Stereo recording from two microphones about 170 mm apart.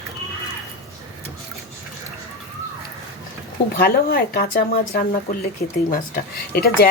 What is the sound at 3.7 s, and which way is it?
A woman's voice, 60° left (ahead or behind).